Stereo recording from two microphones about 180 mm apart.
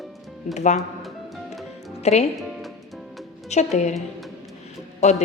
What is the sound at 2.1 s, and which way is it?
Speech, 35° left (ahead or behind).